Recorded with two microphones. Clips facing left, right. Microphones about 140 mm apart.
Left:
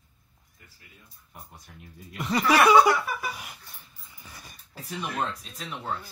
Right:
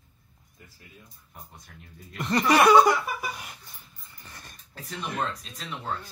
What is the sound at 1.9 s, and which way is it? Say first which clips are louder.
Speech: right 1 dB; 5° left (ahead or behind).